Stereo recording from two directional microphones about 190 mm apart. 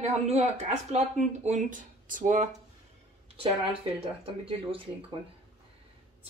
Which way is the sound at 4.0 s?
30° right (ahead or behind).